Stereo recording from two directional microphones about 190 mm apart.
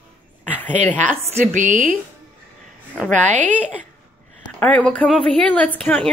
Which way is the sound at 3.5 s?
10° left (ahead or behind).